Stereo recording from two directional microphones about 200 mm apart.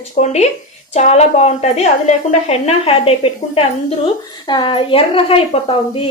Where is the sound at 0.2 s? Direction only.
35° left (ahead or behind).